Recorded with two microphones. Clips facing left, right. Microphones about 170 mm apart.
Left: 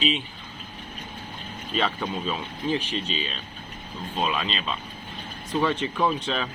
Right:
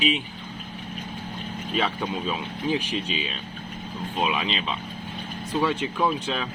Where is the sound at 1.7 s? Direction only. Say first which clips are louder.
Even; 10° right (ahead or behind).